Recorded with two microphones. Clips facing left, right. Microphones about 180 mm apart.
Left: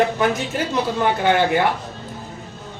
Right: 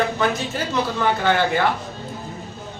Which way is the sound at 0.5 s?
15° left (ahead or behind).